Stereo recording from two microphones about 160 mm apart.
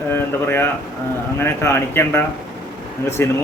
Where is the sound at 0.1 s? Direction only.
15° left (ahead or behind).